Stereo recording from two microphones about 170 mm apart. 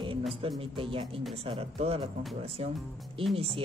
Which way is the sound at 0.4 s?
35° right (ahead or behind).